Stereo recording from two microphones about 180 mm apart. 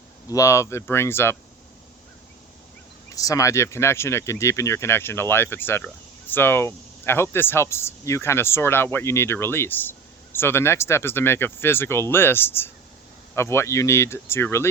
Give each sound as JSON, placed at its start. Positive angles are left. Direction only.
{"t": 0.3, "sound": "speech", "side_deg": 15}
{"t": 3.2, "sound": "speech", "side_deg": 20}